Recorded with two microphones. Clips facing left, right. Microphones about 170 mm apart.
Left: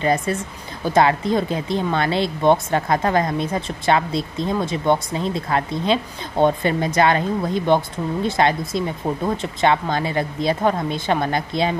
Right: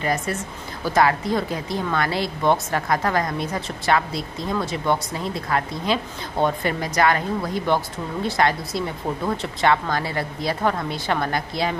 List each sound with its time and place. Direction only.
0.0 s speech: 30° left (ahead or behind)